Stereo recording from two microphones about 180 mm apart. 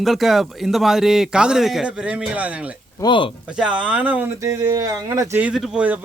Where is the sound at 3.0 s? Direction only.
25° left (ahead or behind).